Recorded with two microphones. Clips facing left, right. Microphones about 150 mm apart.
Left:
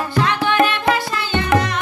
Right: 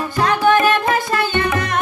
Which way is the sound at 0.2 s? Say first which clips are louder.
Right 3 dB; 40° right (ahead or behind).